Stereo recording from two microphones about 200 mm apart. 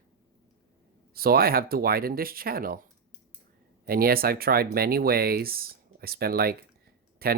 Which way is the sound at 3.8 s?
50° right (ahead or behind).